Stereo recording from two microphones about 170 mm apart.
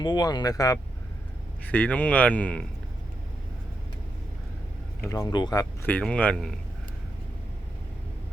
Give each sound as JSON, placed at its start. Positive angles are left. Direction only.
{"t": 0.0, "sound": "speech", "side_deg": 25}
{"t": 1.6, "sound": "speech", "side_deg": 10}
{"t": 5.0, "sound": "speech", "side_deg": 15}
{"t": 5.8, "sound": "speech", "side_deg": 10}